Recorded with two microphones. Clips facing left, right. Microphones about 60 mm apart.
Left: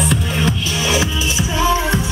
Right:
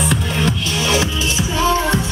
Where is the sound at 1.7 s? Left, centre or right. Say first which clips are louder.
Right 1 dB; centre.